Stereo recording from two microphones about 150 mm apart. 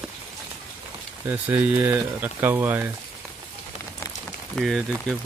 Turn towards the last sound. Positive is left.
turn(degrees=0)  # may be behind; listen again after turning